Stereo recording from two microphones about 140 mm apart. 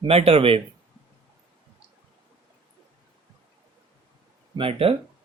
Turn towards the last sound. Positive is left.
turn(degrees=-40)  # may be behind; listen again after turning